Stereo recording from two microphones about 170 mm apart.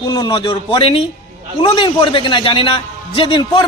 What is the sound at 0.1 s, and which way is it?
A man's voice, 25° left (ahead or behind).